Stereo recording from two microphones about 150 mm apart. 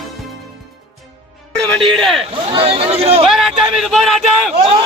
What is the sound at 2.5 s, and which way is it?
Speech, 40° right (ahead or behind).